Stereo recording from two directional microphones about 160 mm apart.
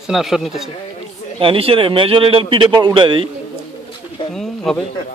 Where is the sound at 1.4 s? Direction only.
35° right (ahead or behind).